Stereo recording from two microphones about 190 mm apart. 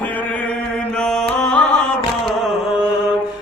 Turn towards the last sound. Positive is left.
turn(degrees=0)  # may be behind; listen again after turning